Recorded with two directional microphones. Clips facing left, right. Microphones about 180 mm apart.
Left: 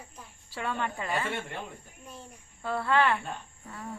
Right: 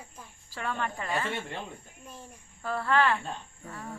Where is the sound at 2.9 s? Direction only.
20° left (ahead or behind).